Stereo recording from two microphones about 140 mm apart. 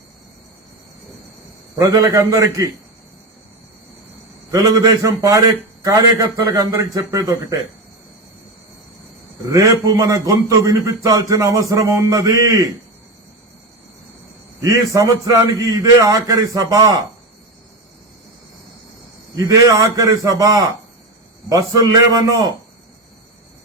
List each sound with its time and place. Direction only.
1.8 s a man's voice: 25° right (ahead or behind)
4.5 s a man's voice: 25° right (ahead or behind)
9.5 s a man's voice: 25° right (ahead or behind)
14.6 s a man's voice: 25° right (ahead or behind)
19.4 s a man's voice: 25° right (ahead or behind)